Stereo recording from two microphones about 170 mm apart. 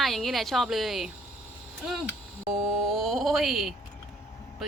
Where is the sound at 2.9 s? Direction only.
Centre (ahead or behind).